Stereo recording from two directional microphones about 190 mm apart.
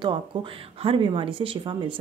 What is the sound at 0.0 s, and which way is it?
Speech, 25° right (ahead or behind).